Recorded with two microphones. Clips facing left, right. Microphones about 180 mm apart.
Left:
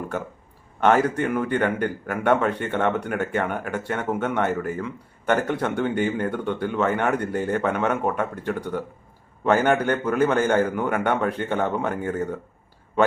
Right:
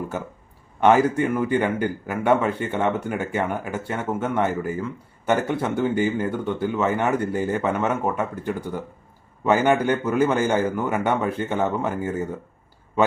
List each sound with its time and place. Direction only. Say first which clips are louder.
0.8 s speech: right 2 dB; 10° right (ahead or behind)